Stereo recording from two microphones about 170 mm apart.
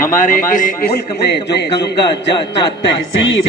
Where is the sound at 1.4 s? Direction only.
85° left.